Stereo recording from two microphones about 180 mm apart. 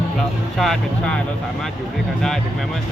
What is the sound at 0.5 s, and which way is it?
Speech, centre (ahead or behind).